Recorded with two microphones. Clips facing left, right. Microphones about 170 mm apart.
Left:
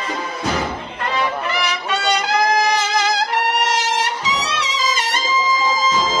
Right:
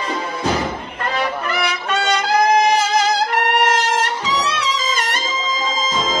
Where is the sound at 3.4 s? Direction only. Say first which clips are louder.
Right 3 dB; 55° right (ahead or behind).